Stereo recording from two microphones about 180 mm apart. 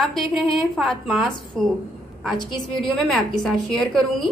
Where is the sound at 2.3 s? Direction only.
25° left (ahead or behind).